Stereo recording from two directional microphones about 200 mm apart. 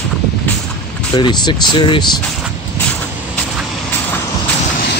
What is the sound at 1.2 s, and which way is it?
Speech, 20° left (ahead or behind).